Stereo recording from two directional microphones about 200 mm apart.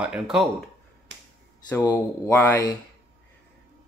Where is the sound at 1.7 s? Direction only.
15° left (ahead or behind).